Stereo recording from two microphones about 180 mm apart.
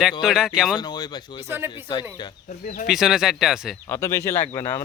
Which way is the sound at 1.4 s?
10° right (ahead or behind).